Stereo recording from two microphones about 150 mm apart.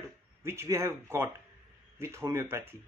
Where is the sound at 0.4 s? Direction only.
15° right (ahead or behind).